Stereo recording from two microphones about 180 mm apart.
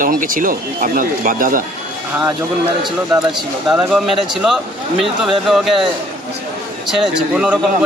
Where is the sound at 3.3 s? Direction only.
5° right (ahead or behind).